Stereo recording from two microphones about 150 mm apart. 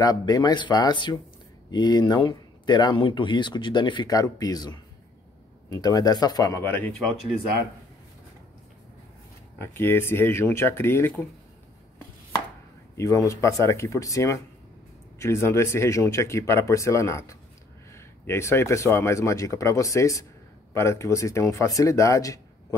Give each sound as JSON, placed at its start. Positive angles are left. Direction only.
{"t": 0.0, "sound": "speech", "side_deg": 25}
{"t": 9.8, "sound": "speech", "side_deg": 15}
{"t": 12.9, "sound": "speech", "side_deg": 20}